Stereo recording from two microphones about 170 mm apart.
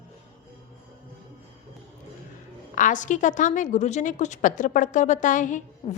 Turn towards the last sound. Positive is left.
turn(degrees=35)  # may be behind; listen again after turning